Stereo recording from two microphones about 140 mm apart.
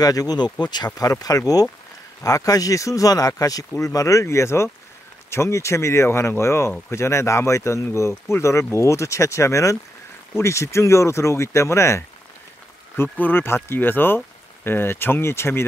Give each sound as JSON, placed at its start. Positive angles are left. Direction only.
{"t": 0.0, "sound": "speech", "side_deg": 25}